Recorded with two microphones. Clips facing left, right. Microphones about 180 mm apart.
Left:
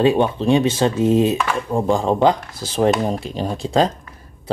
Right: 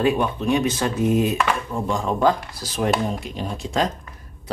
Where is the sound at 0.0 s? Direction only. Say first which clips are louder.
Left 5 dB; 30° left (ahead or behind).